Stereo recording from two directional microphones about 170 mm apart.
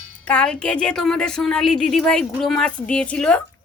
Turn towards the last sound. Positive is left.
turn(degrees=5)  # may be behind; listen again after turning